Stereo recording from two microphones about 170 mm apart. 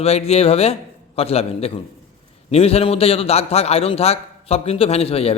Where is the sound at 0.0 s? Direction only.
35° left (ahead or behind).